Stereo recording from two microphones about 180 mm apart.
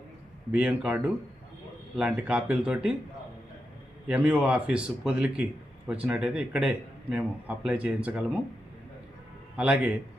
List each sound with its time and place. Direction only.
0.5 s a man's voice: 5° right (ahead or behind)
4.1 s a man's voice: 10° right (ahead or behind)
9.6 s a man's voice: 5° right (ahead or behind)